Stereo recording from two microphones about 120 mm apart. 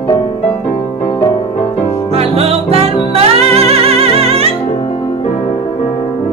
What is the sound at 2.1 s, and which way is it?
Music, 55° right (ahead or behind).